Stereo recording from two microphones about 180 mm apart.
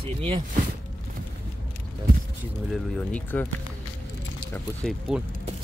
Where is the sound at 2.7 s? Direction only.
5° left (ahead or behind).